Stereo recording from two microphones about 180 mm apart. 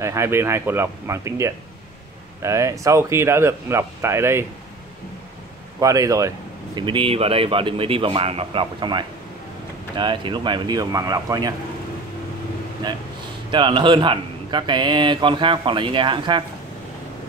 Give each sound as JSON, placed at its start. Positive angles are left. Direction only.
{"t": 0.0, "sound": "speech", "side_deg": -15}
{"t": 5.8, "sound": "speech", "side_deg": -20}
{"t": 13.5, "sound": "speech", "side_deg": -25}